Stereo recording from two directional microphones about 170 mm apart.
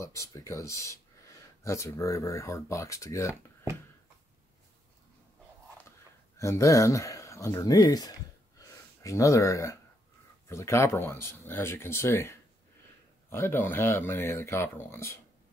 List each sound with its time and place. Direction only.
0.0 s speech: 15° left (ahead or behind)
5.8 s speech: 15° left (ahead or behind)
8.5 s a sound: 20° left (ahead or behind)
10.5 s speech: 15° left (ahead or behind)